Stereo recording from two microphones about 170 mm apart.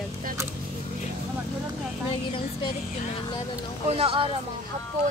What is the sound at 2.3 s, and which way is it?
Speech, 30° left (ahead or behind).